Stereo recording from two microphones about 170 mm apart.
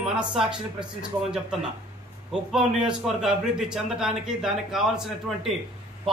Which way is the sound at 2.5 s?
5° right (ahead or behind).